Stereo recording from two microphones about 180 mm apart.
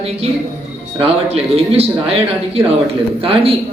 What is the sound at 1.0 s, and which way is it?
A man's voice, 30° right (ahead or behind).